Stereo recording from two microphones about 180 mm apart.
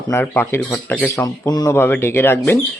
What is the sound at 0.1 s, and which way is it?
Speech, 10° left (ahead or behind).